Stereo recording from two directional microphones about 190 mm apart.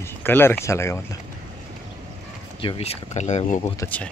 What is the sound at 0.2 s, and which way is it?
Speech, 10° left (ahead or behind).